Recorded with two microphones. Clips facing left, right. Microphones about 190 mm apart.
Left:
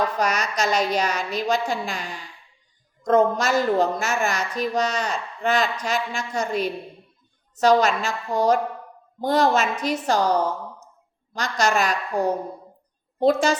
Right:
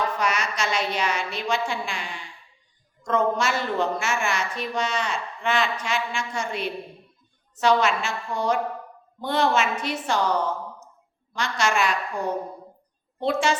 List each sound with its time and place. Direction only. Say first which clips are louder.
0.2 s a woman's voice: left 3 dB; 40° left (ahead or behind)
11.3 s a woman's voice: left 2 dB; 40° left (ahead or behind)